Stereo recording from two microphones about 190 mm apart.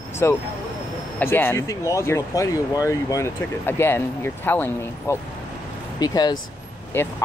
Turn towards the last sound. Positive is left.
turn(degrees=10)  # may be behind; listen again after turning